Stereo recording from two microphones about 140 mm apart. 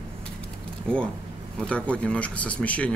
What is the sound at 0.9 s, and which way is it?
Speech, 5° left (ahead or behind).